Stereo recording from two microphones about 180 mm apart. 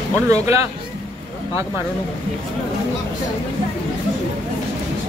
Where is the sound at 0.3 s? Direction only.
15° right (ahead or behind).